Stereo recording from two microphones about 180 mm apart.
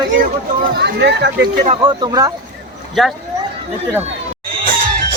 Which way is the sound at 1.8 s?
25° right (ahead or behind).